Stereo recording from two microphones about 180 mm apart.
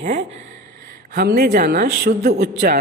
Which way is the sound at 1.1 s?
55° right (ahead or behind).